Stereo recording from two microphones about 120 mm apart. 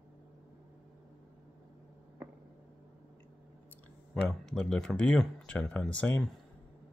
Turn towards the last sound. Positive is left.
turn(degrees=10)  # may be behind; listen again after turning